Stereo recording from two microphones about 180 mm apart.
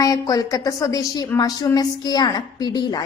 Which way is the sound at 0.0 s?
20° left (ahead or behind).